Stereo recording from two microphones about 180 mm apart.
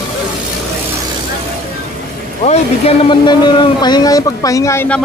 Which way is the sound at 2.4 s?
35° left (ahead or behind).